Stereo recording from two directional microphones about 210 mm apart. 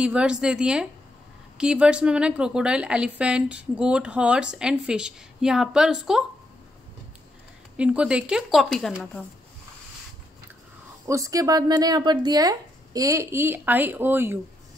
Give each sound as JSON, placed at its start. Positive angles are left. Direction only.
{"t": 0.0, "sound": "a woman's voice", "side_deg": -5}
{"t": 7.7, "sound": "a woman's voice", "side_deg": -5}
{"t": 11.1, "sound": "speech", "side_deg": -15}